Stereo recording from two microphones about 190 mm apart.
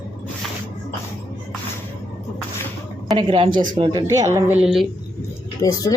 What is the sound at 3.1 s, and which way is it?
A woman's voice, 30° right (ahead or behind).